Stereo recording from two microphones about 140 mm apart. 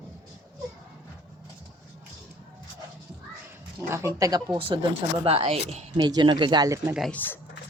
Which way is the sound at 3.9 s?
20° right (ahead or behind).